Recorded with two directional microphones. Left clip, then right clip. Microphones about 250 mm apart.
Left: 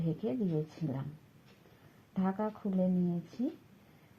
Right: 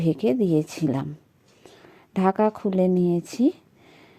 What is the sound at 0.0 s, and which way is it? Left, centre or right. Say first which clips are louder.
A woman's voice: right 14 dB; right.